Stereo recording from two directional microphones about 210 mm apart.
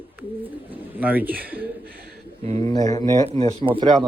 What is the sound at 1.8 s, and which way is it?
Chuckle, 45° right (ahead or behind).